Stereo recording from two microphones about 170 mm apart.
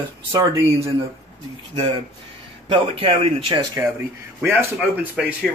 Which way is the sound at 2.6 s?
30° right (ahead or behind).